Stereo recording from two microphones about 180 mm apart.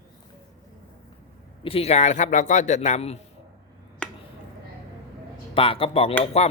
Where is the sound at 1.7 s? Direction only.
35° left (ahead or behind).